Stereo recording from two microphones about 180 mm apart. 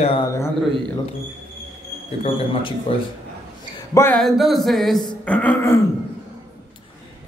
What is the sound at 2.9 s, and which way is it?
Speech, 30° left (ahead or behind).